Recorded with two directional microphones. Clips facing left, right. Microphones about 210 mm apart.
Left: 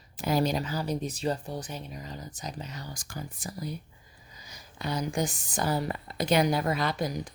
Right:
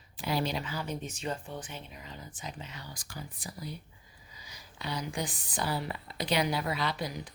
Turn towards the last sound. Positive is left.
turn(degrees=45)  # may be behind; listen again after turning